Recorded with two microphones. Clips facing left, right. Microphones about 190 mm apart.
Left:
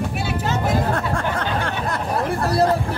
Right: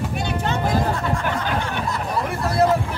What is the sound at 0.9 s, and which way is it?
Speech, 60° left (ahead or behind).